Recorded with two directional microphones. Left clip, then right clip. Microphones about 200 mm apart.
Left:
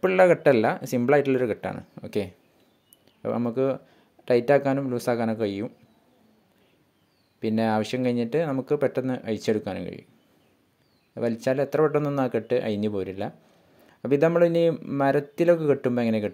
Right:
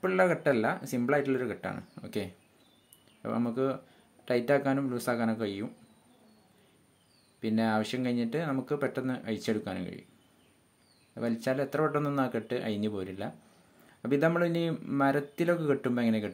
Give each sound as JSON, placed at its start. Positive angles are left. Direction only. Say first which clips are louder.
{"t": 0.0, "sound": "speech", "louder": "left 8 dB", "side_deg": 45}
{"t": 7.3, "sound": "speech", "louder": "left 5 dB", "side_deg": 35}
{"t": 11.1, "sound": "speech", "louder": "left 6 dB", "side_deg": 35}